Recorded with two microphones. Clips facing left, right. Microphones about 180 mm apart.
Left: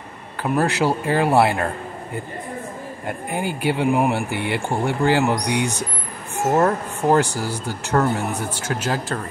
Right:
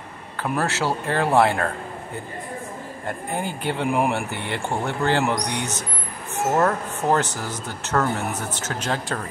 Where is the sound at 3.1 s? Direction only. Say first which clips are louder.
Left 2 dB; 10° left (ahead or behind).